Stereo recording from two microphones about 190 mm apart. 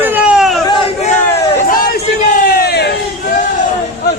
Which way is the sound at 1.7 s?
50° left (ahead or behind).